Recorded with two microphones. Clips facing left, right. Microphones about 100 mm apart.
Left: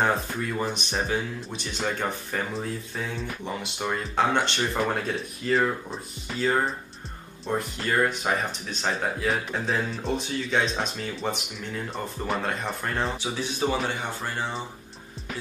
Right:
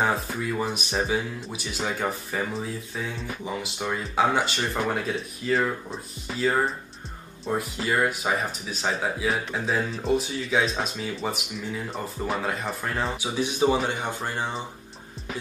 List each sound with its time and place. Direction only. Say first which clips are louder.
0.0 s speech: even; 5° right (ahead or behind)
13.4 s a man's voice: right 5 dB; 15° right (ahead or behind)